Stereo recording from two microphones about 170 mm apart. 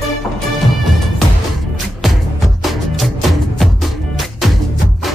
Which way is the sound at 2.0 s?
Centre (ahead or behind).